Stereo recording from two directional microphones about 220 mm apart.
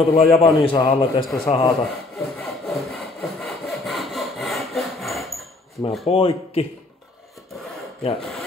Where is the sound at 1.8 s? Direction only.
Centre (ahead or behind).